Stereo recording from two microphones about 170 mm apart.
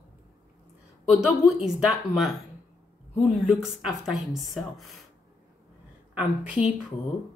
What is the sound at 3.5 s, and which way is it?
Speech, centre (ahead or behind).